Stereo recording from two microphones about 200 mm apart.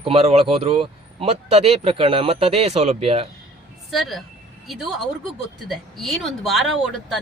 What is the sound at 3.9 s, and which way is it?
Speech, centre (ahead or behind).